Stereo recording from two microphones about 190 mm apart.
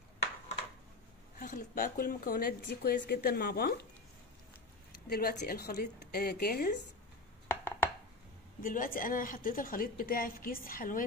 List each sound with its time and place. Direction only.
1.4 s a woman's voice: 45° left (ahead or behind)
4.9 s a woman's voice: 55° left (ahead or behind)
7.4 s a sound: 10° left (ahead or behind)
8.5 s a woman's voice: 45° left (ahead or behind)